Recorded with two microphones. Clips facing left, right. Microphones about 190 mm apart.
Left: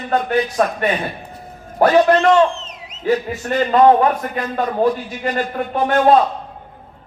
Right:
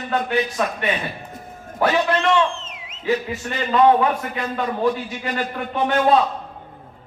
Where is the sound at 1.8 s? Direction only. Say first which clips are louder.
Left 7 dB; 45° left (ahead or behind).